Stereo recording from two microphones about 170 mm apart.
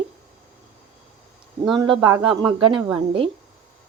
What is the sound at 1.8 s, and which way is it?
Speech, 25° right (ahead or behind).